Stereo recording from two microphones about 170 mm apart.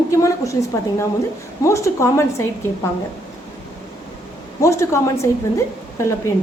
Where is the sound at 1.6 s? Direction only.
15° left (ahead or behind).